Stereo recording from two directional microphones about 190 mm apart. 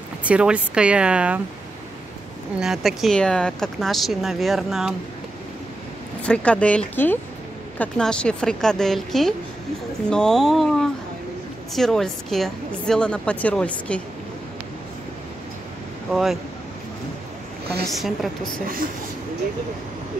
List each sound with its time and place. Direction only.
0.2 s speech: 5° right (ahead or behind)
2.6 s speech: centre (ahead or behind)
6.2 s speech: 5° left (ahead or behind)
16.1 s speech: centre (ahead or behind)
17.8 s speech: centre (ahead or behind)